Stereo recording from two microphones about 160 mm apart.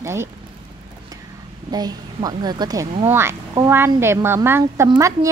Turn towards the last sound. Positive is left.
turn(degrees=-20)  # may be behind; listen again after turning